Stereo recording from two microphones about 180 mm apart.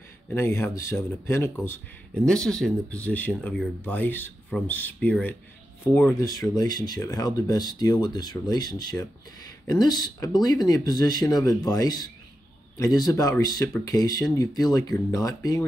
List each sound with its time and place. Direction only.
0.3 s speech: 10° left (ahead or behind)
6.2 s speech: 20° left (ahead or behind)